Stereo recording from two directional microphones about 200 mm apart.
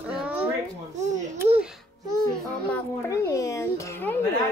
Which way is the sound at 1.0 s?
35° right (ahead or behind).